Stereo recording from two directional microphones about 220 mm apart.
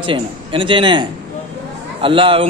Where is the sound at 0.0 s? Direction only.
25° right (ahead or behind).